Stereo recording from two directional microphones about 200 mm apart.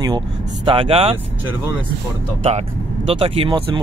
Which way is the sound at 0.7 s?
25° right (ahead or behind).